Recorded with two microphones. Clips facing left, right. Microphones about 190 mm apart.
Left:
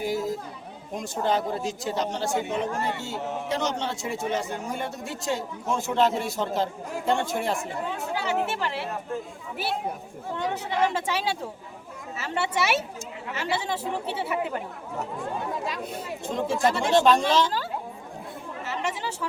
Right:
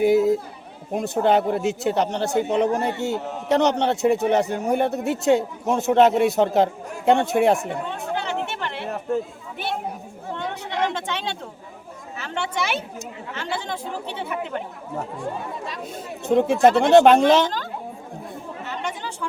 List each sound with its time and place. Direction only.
0.0 s speech: 60° right (ahead or behind)
7.9 s speech: 5° left (ahead or behind)
10.3 s a woman's voice: 5° left (ahead or behind)
16.2 s speech: 65° right (ahead or behind)
18.6 s chatter: 5° left (ahead or behind)